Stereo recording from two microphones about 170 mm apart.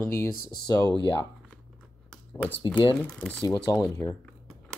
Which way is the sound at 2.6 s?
25° left (ahead or behind).